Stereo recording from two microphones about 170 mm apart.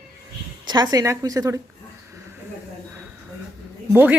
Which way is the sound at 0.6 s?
25° right (ahead or behind).